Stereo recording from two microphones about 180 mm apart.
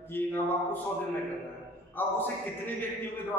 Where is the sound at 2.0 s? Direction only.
10° left (ahead or behind).